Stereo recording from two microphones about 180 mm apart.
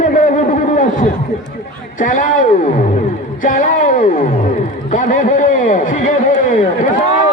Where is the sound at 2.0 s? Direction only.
45° left (ahead or behind).